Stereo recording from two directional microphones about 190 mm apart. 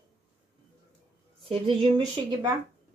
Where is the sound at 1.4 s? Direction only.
30° right (ahead or behind).